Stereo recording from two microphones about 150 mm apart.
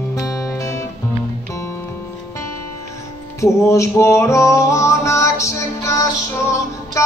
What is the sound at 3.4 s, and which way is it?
Music, 20° left (ahead or behind).